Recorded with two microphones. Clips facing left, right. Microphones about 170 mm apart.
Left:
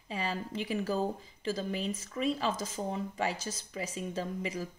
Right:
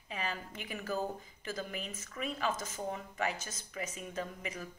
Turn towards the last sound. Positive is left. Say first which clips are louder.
# left 5 dB
turn(degrees=30)  # may be behind; listen again after turning